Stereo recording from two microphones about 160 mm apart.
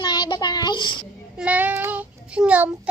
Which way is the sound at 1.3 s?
10° right (ahead or behind).